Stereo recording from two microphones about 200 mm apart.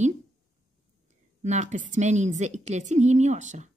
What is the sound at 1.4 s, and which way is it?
Speech, 35° right (ahead or behind).